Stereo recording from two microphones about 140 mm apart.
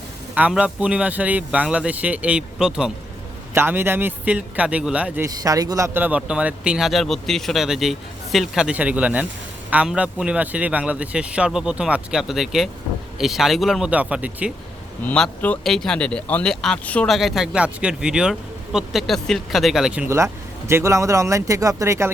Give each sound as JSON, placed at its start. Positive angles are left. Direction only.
{"t": 0.3, "sound": "speech", "side_deg": -10}
{"t": 3.5, "sound": "speech", "side_deg": -15}
{"t": 5.2, "sound": "speech", "side_deg": -25}
{"t": 15.0, "sound": "speech", "side_deg": 10}
{"t": 17.2, "sound": "speech", "side_deg": 0}